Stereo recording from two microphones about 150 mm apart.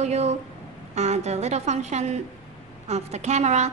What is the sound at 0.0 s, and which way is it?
A woman's voice, 45° right (ahead or behind).